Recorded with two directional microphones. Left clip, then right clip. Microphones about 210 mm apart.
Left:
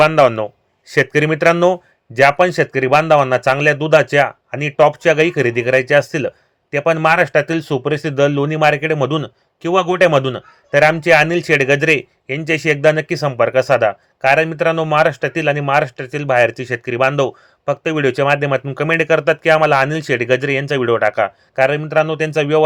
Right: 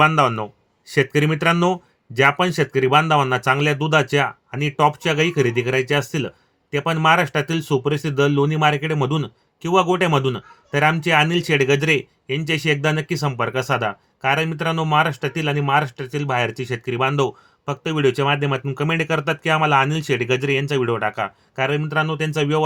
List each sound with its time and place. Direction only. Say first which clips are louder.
0.0 s speech: left 5 dB; 15° left (ahead or behind)